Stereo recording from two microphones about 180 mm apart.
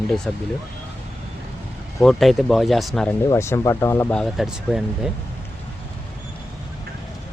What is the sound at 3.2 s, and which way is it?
Speech, 15° left (ahead or behind).